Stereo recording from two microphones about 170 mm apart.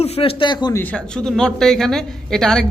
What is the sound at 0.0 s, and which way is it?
Speech, 35° left (ahead or behind).